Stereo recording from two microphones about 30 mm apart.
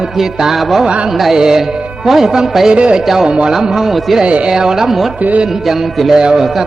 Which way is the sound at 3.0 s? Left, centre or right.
Centre.